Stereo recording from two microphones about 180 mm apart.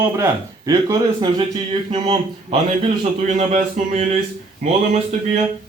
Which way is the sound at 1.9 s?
35° right (ahead or behind).